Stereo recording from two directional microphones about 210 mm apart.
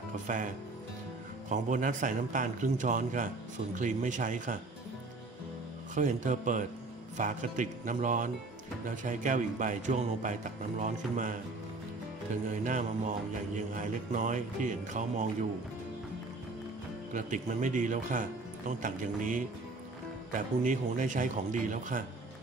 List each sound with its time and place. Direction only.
0.1 s speech: 35° right (ahead or behind)
1.5 s speech: 35° right (ahead or behind)
5.9 s speech: 35° right (ahead or behind)
13.6 s speech: 35° right (ahead or behind)
17.1 s speech: 35° right (ahead or behind)